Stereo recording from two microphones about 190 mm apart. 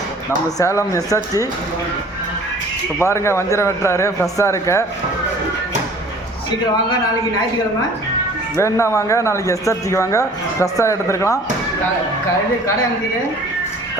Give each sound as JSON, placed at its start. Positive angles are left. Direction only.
{"t": 0.3, "sound": "speech", "side_deg": 15}
{"t": 3.0, "sound": "speech", "side_deg": 15}
{"t": 8.5, "sound": "speech", "side_deg": 15}